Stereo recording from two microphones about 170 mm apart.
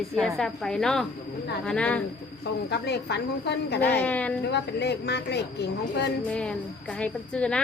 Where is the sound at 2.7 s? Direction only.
75° left (ahead or behind).